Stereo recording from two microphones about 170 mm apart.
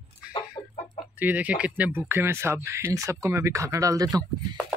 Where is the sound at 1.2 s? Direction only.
10° right (ahead or behind).